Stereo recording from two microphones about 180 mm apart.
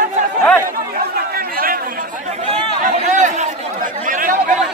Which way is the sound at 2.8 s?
45° right (ahead or behind).